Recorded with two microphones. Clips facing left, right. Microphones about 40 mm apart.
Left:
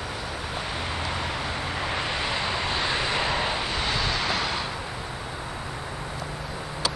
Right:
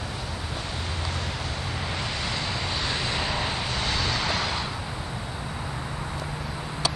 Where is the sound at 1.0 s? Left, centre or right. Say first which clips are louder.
Left 3 dB; centre.